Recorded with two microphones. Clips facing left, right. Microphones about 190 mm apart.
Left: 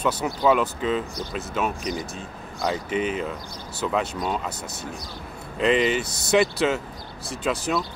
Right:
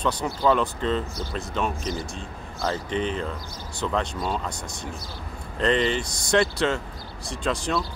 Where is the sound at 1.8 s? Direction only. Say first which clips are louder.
Left 1 dB; 15° left (ahead or behind).